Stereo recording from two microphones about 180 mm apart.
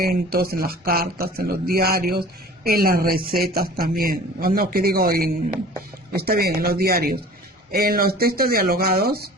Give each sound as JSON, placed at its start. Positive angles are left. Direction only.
{"t": 0.0, "sound": "speech", "side_deg": -60}